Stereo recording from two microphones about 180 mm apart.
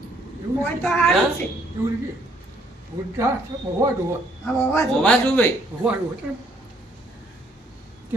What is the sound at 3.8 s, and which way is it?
Speech, 15° right (ahead or behind).